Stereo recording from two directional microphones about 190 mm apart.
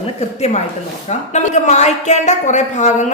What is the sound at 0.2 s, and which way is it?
Speech, 35° left (ahead or behind).